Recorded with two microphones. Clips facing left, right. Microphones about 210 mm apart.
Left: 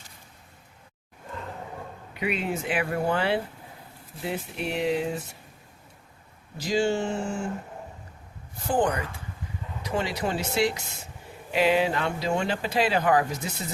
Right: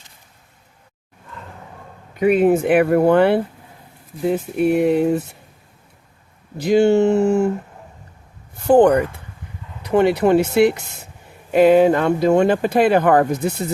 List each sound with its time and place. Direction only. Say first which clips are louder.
2.1 s speech: right 15 dB; 50° right (ahead or behind)
4.2 s speech: right 13 dB; 45° right (ahead or behind)
6.6 s speech: right 11 dB; 60° right (ahead or behind)
8.6 s speech: right 13 dB; 60° right (ahead or behind)